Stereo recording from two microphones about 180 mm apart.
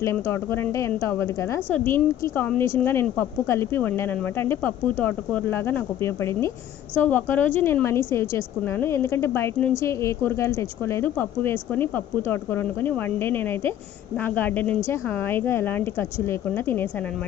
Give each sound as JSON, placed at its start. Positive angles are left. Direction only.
{"t": 0.0, "sound": "speech", "side_deg": 15}